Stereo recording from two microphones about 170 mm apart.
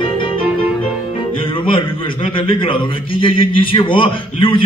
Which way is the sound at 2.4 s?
30° left (ahead or behind).